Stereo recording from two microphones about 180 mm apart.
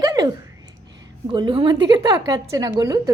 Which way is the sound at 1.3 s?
25° right (ahead or behind).